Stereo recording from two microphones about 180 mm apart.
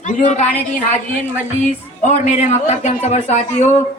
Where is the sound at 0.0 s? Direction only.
40° left (ahead or behind).